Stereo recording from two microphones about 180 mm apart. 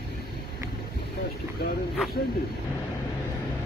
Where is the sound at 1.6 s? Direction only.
60° left (ahead or behind).